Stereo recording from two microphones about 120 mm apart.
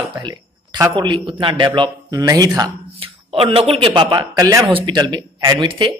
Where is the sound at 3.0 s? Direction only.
50° right (ahead or behind).